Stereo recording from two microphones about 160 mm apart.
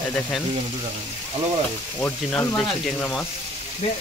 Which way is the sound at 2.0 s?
10° left (ahead or behind).